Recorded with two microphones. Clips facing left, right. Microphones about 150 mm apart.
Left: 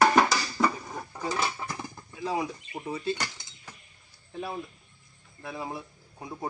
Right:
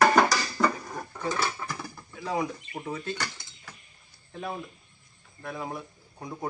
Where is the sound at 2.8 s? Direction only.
10° left (ahead or behind).